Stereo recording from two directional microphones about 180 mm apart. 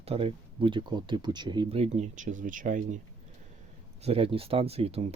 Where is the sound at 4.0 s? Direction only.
35° right (ahead or behind).